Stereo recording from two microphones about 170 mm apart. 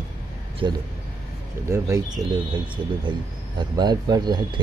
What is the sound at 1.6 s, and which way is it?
Speech, 15° right (ahead or behind).